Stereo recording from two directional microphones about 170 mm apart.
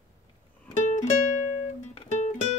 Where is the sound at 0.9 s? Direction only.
45° left (ahead or behind).